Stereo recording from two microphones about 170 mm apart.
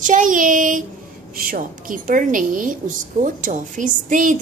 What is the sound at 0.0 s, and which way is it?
A woman's voice, 50° right (ahead or behind).